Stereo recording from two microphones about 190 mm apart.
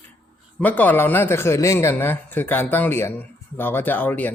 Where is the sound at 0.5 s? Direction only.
10° left (ahead or behind).